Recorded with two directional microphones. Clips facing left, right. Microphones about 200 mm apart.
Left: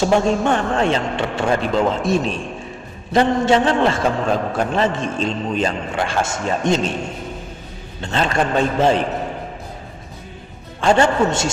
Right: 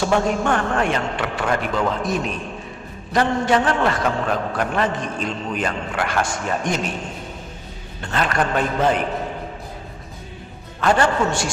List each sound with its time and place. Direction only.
0.0 s a man's voice: 25° left (ahead or behind)
8.0 s a man's voice: 25° left (ahead or behind)
10.8 s a man's voice: 25° left (ahead or behind)